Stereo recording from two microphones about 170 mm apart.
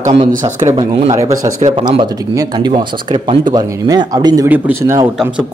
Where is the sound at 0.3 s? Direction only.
50° right (ahead or behind).